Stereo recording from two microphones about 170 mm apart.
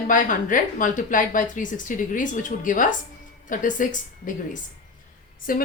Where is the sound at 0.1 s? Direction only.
50° left (ahead or behind).